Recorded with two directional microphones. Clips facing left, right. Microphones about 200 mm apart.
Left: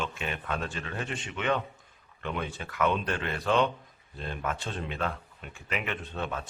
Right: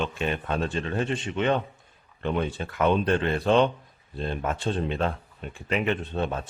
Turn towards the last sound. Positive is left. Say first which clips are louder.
# right 6 dB
turn(degrees=-30)  # may be behind; listen again after turning